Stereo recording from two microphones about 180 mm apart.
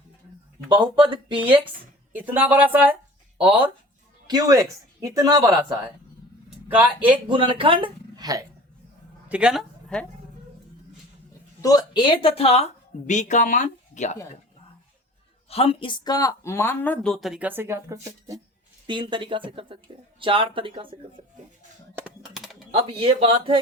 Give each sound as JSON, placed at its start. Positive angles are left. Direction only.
{"t": 0.7, "sound": "speech", "side_deg": -25}
{"t": 2.1, "sound": "speech", "side_deg": -10}
{"t": 4.3, "sound": "speech", "side_deg": -20}
{"t": 6.7, "sound": "speech", "side_deg": -10}
{"t": 7.3, "sound": "speech", "side_deg": -30}
{"t": 9.3, "sound": "speech", "side_deg": -5}
{"t": 11.6, "sound": "a woman's voice", "side_deg": 20}
{"t": 15.4, "sound": "speech", "side_deg": 35}
{"t": 22.2, "sound": "typing", "side_deg": 0}
{"t": 22.7, "sound": "speech", "side_deg": -30}